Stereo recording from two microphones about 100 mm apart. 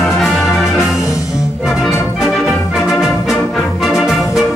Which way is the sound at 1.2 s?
5° right (ahead or behind).